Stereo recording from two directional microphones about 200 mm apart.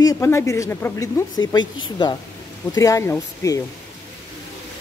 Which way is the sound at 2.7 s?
15° left (ahead or behind).